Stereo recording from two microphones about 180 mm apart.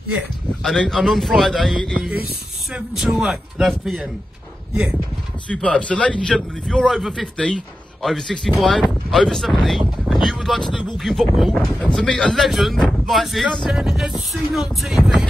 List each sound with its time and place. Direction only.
0.6 s speech: centre (ahead or behind)
5.5 s speech: 5° left (ahead or behind)